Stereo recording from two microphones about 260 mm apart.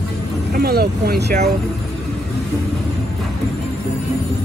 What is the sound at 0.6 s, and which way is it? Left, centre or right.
Vehicle, right.